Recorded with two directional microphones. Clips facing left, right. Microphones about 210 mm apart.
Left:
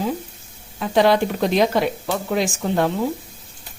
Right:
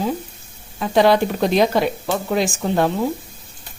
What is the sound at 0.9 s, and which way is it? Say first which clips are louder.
Speech: right 1 dB; 35° right (ahead or behind).